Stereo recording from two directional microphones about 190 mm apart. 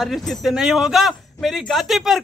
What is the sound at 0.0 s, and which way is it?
A man's voice, centre (ahead or behind).